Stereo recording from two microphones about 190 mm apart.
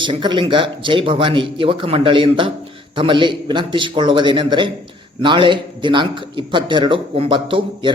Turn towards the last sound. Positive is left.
turn(degrees=-25)  # may be behind; listen again after turning